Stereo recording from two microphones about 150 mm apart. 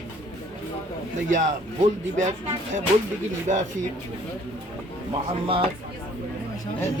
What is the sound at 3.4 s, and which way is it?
Speech, 55° right (ahead or behind).